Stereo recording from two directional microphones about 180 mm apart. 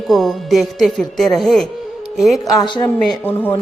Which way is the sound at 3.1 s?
10° left (ahead or behind).